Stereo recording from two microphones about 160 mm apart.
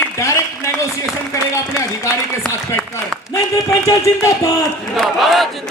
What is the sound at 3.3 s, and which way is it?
A man's voice, 20° left (ahead or behind).